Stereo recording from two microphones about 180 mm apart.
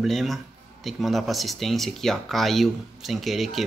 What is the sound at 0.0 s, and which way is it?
Speech, centre (ahead or behind).